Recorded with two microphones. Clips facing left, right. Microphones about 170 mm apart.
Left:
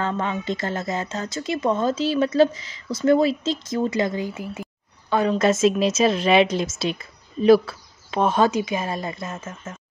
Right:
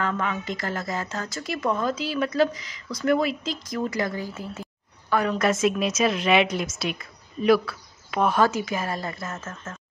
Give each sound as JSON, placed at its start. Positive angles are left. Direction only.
{"t": 0.0, "sound": "a woman's voice", "side_deg": 30}
{"t": 5.1, "sound": "a woman's voice", "side_deg": 25}